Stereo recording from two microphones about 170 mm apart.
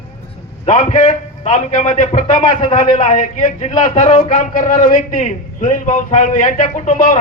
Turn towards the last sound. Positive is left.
turn(degrees=45)  # may be behind; listen again after turning